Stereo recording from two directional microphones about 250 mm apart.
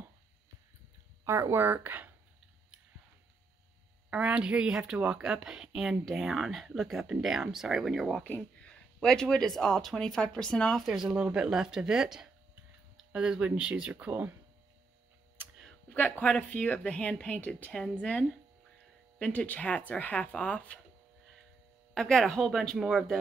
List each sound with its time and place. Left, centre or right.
1.2 s speech: centre
4.1 s a woman's voice: centre
15.9 s a woman's voice: centre
21.9 s a woman's voice: centre